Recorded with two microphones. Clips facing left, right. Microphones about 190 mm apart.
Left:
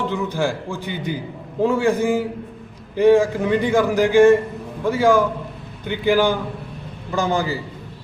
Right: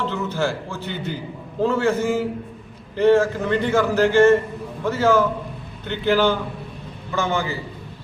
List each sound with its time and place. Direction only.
0.1 s a man's voice: 15° left (ahead or behind)
7.2 s a man's voice: 35° left (ahead or behind)